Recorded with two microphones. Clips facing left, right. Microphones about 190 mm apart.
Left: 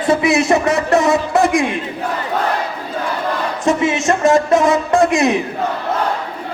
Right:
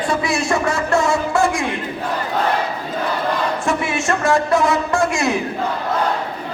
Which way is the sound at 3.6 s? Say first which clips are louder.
Left 9 dB; 20° left (ahead or behind).